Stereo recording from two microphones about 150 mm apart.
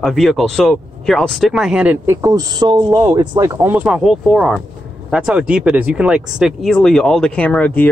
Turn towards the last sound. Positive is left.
turn(degrees=10)  # may be behind; listen again after turning